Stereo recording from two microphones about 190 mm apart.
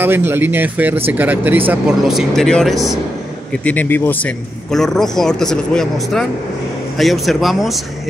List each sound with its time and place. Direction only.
0.0 s a man's voice: 10° right (ahead or behind)